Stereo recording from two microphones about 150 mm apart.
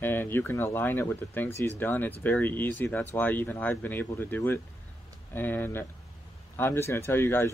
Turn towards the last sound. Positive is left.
turn(degrees=15)  # may be behind; listen again after turning